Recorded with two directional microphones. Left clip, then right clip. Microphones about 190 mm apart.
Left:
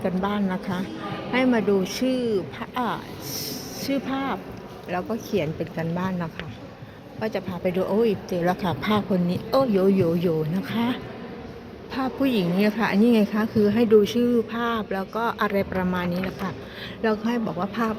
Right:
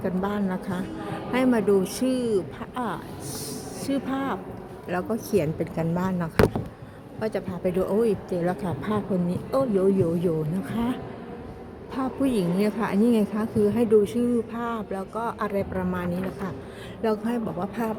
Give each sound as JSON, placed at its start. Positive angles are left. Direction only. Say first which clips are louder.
{"t": 0.0, "sound": "a woman's voice", "louder": "left 2 dB", "side_deg": -5}
{"t": 11.9, "sound": "a woman's voice", "louder": "left 2 dB", "side_deg": -10}